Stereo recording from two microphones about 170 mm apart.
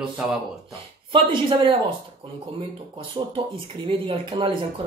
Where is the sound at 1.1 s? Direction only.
30° right (ahead or behind).